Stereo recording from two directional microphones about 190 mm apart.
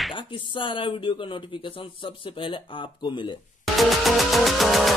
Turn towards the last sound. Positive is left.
turn(degrees=0)  # may be behind; listen again after turning